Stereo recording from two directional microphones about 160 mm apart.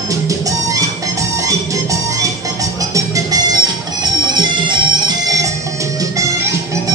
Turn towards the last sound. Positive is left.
turn(degrees=-20)  # may be behind; listen again after turning